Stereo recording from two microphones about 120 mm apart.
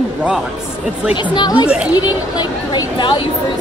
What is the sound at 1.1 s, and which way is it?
Speech, 40° left (ahead or behind).